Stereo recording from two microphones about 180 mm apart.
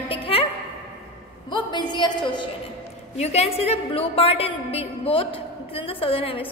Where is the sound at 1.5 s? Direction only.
25° left (ahead or behind).